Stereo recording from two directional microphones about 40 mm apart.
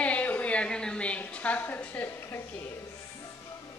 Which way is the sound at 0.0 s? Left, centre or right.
Left.